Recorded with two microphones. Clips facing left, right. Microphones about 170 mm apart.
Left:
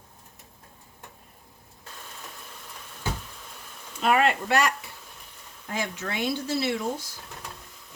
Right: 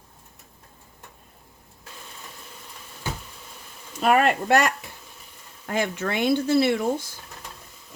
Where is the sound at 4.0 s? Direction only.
45° right (ahead or behind).